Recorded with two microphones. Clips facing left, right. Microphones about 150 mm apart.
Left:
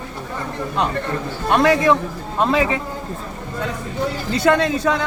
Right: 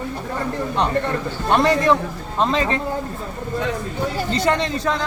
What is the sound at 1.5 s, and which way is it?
Speech, centre (ahead or behind).